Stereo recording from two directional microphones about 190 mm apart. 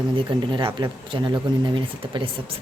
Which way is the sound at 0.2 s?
25° right (ahead or behind).